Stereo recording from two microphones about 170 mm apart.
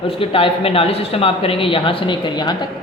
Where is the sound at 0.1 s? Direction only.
30° left (ahead or behind).